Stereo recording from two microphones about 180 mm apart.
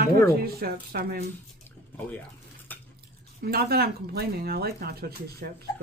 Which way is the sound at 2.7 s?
10° left (ahead or behind).